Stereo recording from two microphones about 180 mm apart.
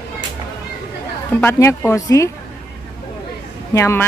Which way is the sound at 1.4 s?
15° left (ahead or behind).